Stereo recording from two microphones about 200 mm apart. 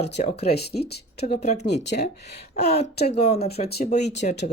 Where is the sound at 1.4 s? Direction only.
35° left (ahead or behind).